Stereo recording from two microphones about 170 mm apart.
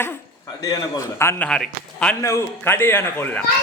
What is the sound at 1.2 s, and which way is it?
A man's voice, 15° left (ahead or behind).